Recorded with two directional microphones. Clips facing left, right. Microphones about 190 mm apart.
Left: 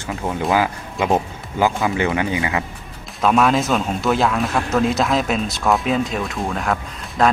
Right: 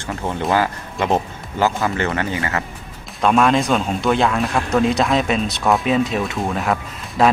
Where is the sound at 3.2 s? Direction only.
Centre (ahead or behind).